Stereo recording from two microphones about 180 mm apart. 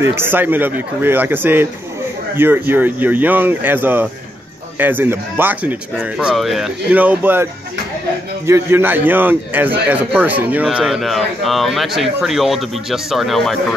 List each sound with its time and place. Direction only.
0.0 s speech: 15° right (ahead or behind)
8.5 s speech: 15° right (ahead or behind); by 13.7 s centre (ahead or behind)